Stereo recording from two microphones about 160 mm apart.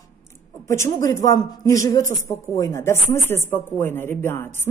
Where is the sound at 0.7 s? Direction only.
15° left (ahead or behind).